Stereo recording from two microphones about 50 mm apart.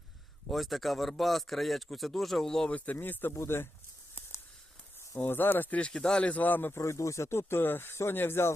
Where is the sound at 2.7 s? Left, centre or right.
Left.